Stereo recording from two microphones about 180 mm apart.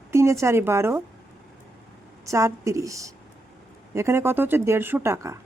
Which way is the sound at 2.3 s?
15° right (ahead or behind).